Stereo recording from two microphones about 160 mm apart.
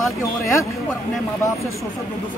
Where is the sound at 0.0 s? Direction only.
20° left (ahead or behind).